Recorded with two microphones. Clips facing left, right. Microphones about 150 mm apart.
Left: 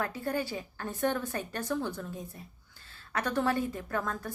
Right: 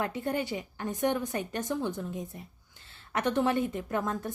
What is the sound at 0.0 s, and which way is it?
A woman's voice, 20° right (ahead or behind).